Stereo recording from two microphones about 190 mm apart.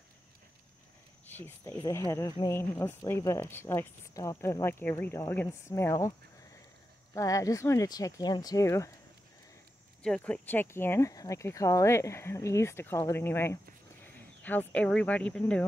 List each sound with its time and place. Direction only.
1.3 s speech: 10° left (ahead or behind)
7.2 s speech: 15° left (ahead or behind)
10.0 s speech: 5° left (ahead or behind)